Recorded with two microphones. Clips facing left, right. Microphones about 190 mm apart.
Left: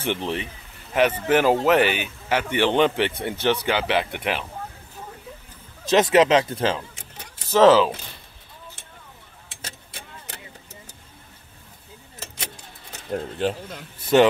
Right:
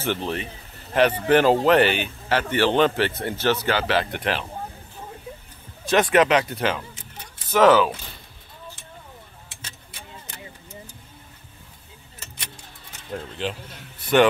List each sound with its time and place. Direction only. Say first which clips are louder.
0.0 s speech: even; 20° left (ahead or behind)
0.9 s speech: right 1 dB; 10° left (ahead or behind)
5.9 s speech: left 2 dB; 20° left (ahead or behind)
13.1 s speech: left 5 dB; 40° left (ahead or behind)